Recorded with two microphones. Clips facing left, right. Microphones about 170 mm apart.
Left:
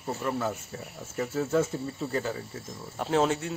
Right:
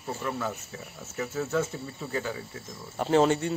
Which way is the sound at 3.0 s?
Centre (ahead or behind).